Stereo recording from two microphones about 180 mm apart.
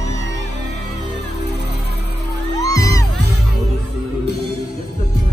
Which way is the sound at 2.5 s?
20° left (ahead or behind).